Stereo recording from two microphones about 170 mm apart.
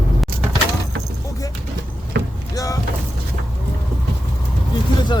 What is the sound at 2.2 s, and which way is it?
Vehicle, 75° right (ahead or behind).